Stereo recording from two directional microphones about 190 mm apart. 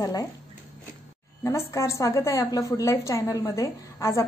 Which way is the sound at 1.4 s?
15° left (ahead or behind).